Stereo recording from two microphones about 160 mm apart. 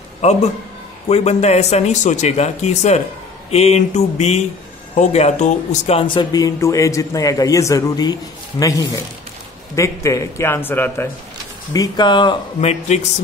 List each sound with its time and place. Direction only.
0.2 s a man's voice: 45° left (ahead or behind); by 11.1 s 15° left (ahead or behind)
11.7 s speech: 25° left (ahead or behind)
12.5 s speech: 45° left (ahead or behind)